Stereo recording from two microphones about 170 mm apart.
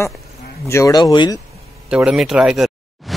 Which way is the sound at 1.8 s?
5° right (ahead or behind).